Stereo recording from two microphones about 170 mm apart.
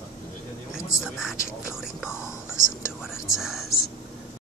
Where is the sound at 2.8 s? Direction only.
15° left (ahead or behind).